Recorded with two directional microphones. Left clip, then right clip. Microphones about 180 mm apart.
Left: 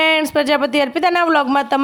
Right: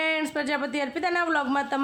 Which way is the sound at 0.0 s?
50° left (ahead or behind).